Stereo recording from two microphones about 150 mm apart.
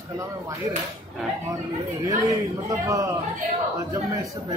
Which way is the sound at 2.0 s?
20° right (ahead or behind).